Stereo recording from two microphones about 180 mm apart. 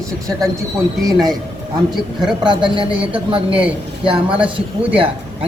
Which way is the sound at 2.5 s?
25° right (ahead or behind).